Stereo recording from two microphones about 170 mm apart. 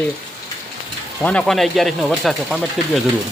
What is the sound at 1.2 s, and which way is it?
Speech, 5° left (ahead or behind).